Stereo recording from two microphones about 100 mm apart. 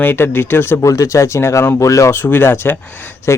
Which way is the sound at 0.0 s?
25° left (ahead or behind).